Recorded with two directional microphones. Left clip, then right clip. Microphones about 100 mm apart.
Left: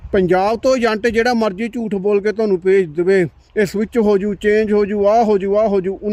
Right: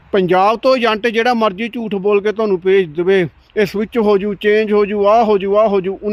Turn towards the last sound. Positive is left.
turn(degrees=35)  # may be behind; listen again after turning